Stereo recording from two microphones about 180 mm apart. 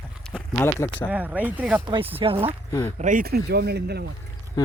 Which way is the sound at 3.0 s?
45° right (ahead or behind).